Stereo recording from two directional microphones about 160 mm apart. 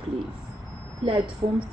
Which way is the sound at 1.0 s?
35° right (ahead or behind).